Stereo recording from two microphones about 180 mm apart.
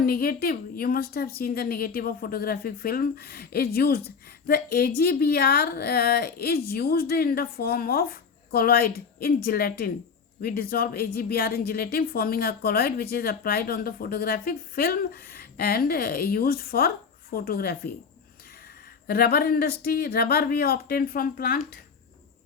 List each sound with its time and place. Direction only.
0.0 s a woman's voice: 55° left (ahead or behind)
19.0 s a woman's voice: 60° left (ahead or behind)